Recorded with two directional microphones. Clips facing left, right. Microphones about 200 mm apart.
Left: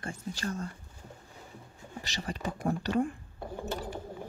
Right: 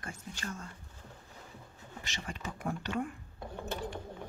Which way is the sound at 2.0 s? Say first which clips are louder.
Left 6 dB; 35° left (ahead or behind).